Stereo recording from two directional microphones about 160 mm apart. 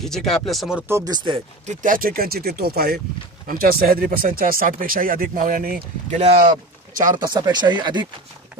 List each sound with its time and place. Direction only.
0.0 s speech: centre (ahead or behind)
0.8 s speech: 20° right (ahead or behind)
1.7 s speech: 55° right (ahead or behind); by 3.0 s 75° right (ahead or behind)
3.4 s speech: 65° right (ahead or behind)
7.1 s speech: 25° right (ahead or behind)